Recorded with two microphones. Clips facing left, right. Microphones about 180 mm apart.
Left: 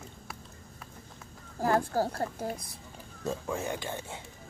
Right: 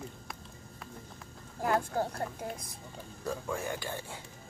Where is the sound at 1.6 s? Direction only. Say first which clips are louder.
Left 3 dB; 35° left (ahead or behind).